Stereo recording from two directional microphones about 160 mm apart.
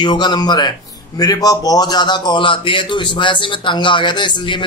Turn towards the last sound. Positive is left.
turn(degrees=30)  # may be behind; listen again after turning